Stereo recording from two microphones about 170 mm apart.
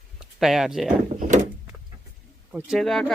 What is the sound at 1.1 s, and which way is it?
Door, 50° right (ahead or behind).